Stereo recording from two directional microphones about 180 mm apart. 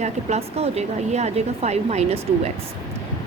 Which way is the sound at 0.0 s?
35° right (ahead or behind).